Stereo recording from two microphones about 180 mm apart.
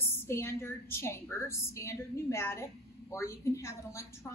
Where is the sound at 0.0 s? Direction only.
15° left (ahead or behind).